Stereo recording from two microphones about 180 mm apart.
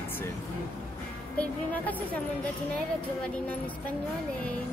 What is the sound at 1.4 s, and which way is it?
Speech, 10° left (ahead or behind).